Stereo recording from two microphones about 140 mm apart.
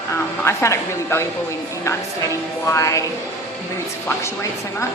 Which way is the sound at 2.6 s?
20° left (ahead or behind).